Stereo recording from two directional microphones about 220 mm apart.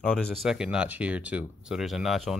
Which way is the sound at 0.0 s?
5° left (ahead or behind).